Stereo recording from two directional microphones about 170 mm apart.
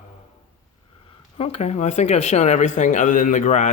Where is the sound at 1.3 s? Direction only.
40° left (ahead or behind).